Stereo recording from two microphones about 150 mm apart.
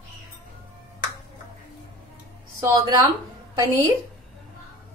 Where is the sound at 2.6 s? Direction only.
20° right (ahead or behind).